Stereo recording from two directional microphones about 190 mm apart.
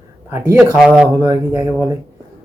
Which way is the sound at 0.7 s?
5° right (ahead or behind).